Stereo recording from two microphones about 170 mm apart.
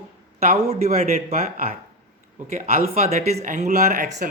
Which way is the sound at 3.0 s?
40° right (ahead or behind).